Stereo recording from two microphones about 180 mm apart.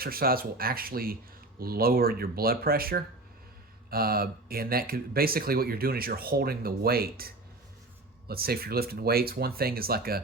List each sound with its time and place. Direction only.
0.0 s speech: 55° right (ahead or behind)